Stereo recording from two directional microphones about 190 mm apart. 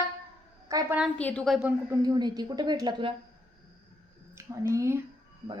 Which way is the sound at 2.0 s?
20° right (ahead or behind).